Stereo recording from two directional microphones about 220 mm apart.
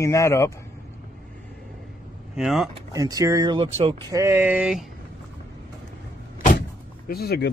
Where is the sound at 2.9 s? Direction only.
15° right (ahead or behind).